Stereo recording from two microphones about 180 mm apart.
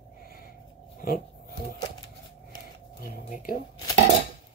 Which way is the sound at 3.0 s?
55° left (ahead or behind).